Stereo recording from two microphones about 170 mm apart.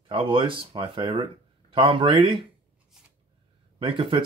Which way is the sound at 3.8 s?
30° right (ahead or behind).